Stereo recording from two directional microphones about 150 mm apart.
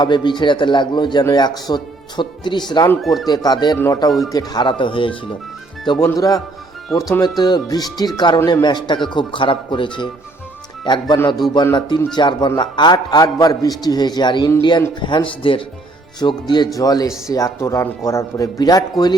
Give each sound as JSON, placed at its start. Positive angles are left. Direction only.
{"t": 0.0, "sound": "a man's voice", "side_deg": 30}
{"t": 3.0, "sound": "speech", "side_deg": 0}
{"t": 3.2, "sound": "a man's voice", "side_deg": 25}
{"t": 11.1, "sound": "a man's voice", "side_deg": 30}